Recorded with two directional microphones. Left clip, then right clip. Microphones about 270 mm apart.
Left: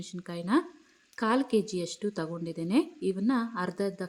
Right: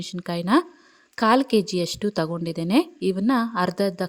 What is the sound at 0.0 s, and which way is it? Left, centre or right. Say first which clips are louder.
A woman's voice: right 10 dB; right.